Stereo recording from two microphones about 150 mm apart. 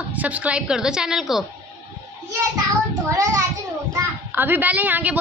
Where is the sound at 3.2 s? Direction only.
20° right (ahead or behind).